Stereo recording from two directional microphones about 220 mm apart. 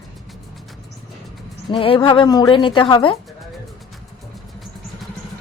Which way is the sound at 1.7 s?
25° left (ahead or behind).